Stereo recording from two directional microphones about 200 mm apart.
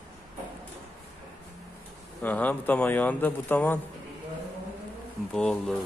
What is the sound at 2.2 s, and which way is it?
A man's voice, 10° left (ahead or behind).